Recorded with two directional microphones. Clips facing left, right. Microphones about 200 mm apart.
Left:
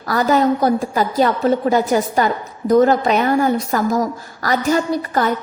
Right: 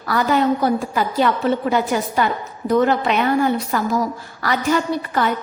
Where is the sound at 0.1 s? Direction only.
40° left (ahead or behind).